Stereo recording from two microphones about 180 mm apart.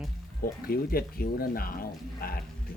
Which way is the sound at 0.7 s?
55° left (ahead or behind).